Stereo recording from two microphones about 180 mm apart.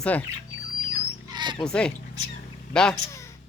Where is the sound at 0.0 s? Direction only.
10° left (ahead or behind).